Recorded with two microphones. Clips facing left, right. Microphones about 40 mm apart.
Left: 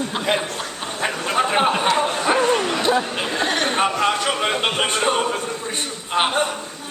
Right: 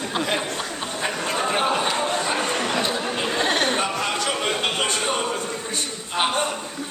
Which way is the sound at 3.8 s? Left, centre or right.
Left.